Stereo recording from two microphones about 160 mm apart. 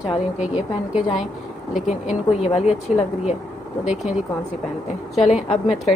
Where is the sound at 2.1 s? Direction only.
45° left (ahead or behind).